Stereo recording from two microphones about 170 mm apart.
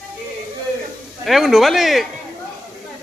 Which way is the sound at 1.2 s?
Centre (ahead or behind).